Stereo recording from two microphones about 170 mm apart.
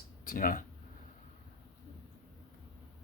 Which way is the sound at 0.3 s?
55° left (ahead or behind).